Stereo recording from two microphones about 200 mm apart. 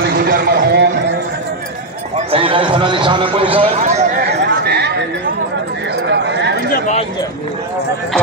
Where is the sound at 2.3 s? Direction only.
25° right (ahead or behind).